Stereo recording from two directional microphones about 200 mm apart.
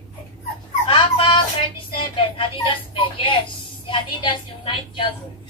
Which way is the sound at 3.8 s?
25° left (ahead or behind).